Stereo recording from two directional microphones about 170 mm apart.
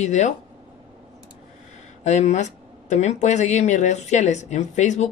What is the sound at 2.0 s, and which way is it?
Speech, 45° left (ahead or behind).